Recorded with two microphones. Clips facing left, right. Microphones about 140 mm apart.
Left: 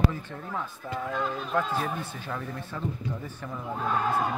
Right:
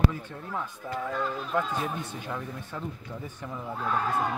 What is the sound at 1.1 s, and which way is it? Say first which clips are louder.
Speech: left 1 dB; 5° left (ahead or behind).